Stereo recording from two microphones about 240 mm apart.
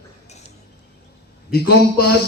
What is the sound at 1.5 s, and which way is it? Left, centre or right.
Speech, left.